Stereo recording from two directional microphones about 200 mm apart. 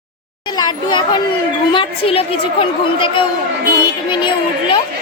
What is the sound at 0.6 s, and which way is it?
A child's voice, 20° left (ahead or behind).